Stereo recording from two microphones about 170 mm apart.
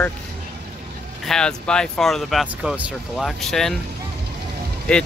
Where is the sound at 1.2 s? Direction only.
5° left (ahead or behind).